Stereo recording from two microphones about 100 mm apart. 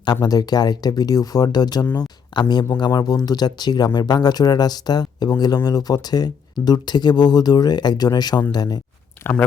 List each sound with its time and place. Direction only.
0.0 s speech: 45° left (ahead or behind)